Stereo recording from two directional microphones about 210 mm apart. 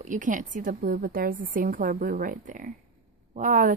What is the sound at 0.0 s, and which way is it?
A woman's voice, 40° right (ahead or behind).